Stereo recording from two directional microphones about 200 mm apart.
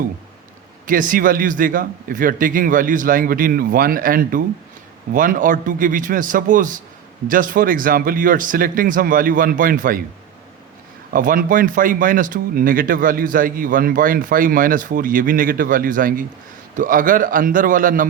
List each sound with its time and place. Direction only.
0.9 s a man's voice: 45° right (ahead or behind)
11.1 s speech: 45° right (ahead or behind)